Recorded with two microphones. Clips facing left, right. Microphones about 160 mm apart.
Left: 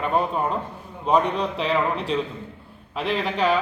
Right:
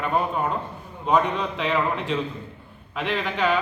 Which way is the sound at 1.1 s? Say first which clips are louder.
Left 1 dB; 35° left (ahead or behind).